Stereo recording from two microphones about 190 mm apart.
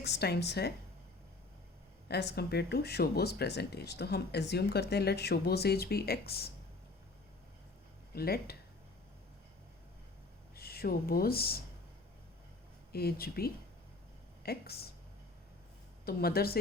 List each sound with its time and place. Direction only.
0.0 s speech: 60° left (ahead or behind)
2.0 s speech: 60° left (ahead or behind)
8.1 s speech: 55° left (ahead or behind)
10.5 s speech: 55° left (ahead or behind)
12.9 s speech: 55° left (ahead or behind)
16.0 s speech: 55° left (ahead or behind)